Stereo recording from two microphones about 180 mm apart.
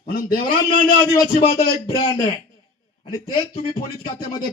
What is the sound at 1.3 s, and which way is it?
A man's voice, 30° left (ahead or behind).